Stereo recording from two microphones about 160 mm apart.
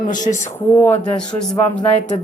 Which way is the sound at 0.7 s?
10° left (ahead or behind).